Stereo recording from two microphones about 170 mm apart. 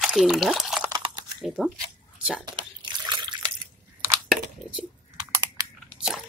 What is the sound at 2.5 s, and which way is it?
Liquid, 30° right (ahead or behind).